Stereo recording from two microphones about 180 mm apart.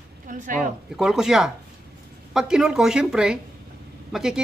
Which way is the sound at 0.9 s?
5° right (ahead or behind).